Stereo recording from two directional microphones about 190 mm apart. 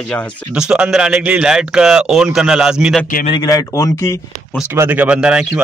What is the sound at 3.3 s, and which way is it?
Speech, 20° left (ahead or behind).